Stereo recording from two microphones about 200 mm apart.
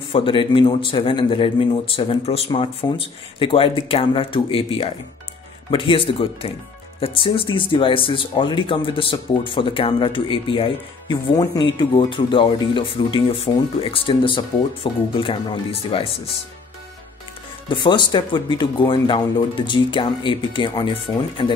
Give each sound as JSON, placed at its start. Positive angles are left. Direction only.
{"t": 0.1, "sound": "speech", "side_deg": 25}
{"t": 17.6, "sound": "speech", "side_deg": 20}